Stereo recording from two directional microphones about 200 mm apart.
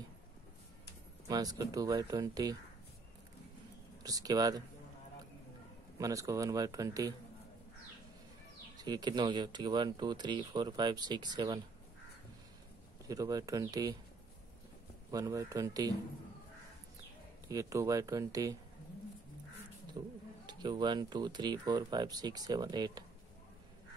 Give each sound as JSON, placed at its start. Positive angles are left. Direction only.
{"t": 1.3, "sound": "speech", "side_deg": -20}
{"t": 4.0, "sound": "speech", "side_deg": -20}
{"t": 5.9, "sound": "speech", "side_deg": -15}
{"t": 8.7, "sound": "speech", "side_deg": -20}
{"t": 13.1, "sound": "speech", "side_deg": -20}
{"t": 15.0, "sound": "speech", "side_deg": -15}
{"t": 17.5, "sound": "speech", "side_deg": -15}
{"t": 20.0, "sound": "a sound", "side_deg": -25}
{"t": 20.4, "sound": "speech", "side_deg": -20}